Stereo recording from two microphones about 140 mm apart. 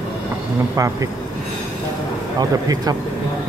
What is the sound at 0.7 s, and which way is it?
Speech, 25° right (ahead or behind).